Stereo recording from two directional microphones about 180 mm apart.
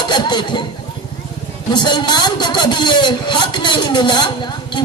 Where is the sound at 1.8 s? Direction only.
25° left (ahead or behind).